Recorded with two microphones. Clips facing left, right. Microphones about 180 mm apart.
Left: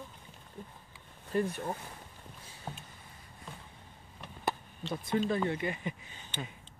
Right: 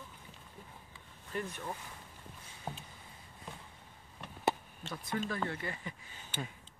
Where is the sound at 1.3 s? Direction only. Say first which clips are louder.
Left 7 dB; 35° left (ahead or behind).